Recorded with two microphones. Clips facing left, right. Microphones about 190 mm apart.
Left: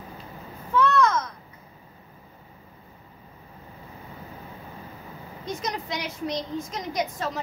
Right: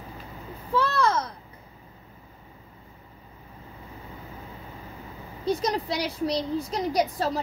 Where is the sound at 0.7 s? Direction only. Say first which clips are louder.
Left 2 dB; 30° right (ahead or behind).